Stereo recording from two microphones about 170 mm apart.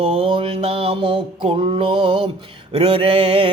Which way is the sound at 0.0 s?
35° right (ahead or behind).